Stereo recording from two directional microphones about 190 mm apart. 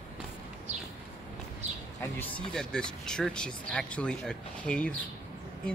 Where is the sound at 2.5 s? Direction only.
5° left (ahead or behind).